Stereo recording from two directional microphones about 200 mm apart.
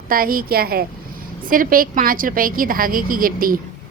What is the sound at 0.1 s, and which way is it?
A woman's voice, 45° right (ahead or behind).